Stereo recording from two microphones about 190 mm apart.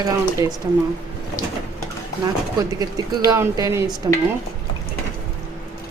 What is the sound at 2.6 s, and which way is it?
Speech, 20° right (ahead or behind).